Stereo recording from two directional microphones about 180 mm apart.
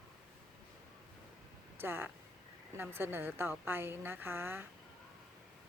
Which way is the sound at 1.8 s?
10° right (ahead or behind).